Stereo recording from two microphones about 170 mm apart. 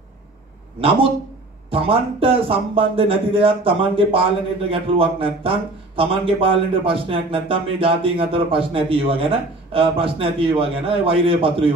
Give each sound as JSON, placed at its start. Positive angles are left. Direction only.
{"t": 0.7, "sound": "speech", "side_deg": -30}